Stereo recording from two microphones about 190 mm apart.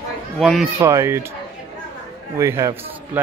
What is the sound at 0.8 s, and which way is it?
Speech, 15° right (ahead or behind).